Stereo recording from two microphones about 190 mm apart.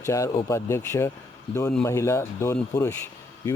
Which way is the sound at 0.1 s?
15° left (ahead or behind).